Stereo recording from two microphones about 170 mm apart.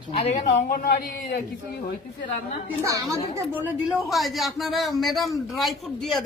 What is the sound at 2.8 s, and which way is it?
Speech, 20° right (ahead or behind).